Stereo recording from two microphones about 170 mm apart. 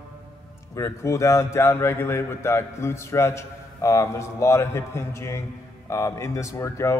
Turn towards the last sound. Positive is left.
turn(degrees=15)  # may be behind; listen again after turning